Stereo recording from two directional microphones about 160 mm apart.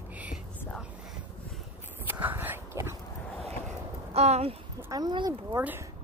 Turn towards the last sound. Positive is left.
turn(degrees=-25)  # may be behind; listen again after turning